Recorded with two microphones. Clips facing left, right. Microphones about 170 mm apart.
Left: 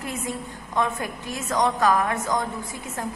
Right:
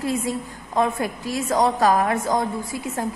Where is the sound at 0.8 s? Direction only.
35° right (ahead or behind).